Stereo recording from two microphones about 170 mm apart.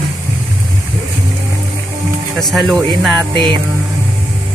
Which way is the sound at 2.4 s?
Centre (ahead or behind).